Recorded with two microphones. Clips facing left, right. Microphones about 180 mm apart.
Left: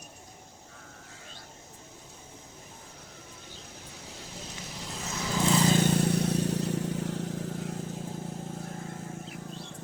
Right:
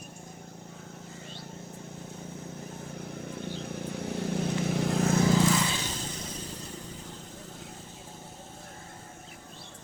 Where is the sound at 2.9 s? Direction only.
60° right (ahead or behind).